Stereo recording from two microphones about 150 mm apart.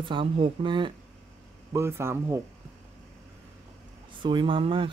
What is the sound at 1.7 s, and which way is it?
Speech, 15° right (ahead or behind).